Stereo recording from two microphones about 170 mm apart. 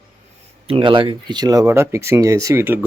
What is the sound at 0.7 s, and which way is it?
Speech, 30° right (ahead or behind).